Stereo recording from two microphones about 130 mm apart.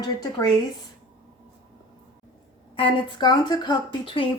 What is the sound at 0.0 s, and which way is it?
Speech, 30° left (ahead or behind).